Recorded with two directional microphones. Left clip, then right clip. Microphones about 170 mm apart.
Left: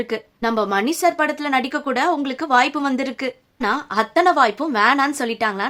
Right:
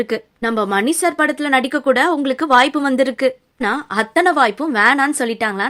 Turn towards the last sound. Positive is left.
turn(degrees=-20)  # may be behind; listen again after turning